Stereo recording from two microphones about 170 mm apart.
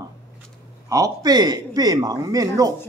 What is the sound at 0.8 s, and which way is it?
A man's voice, 20° right (ahead or behind).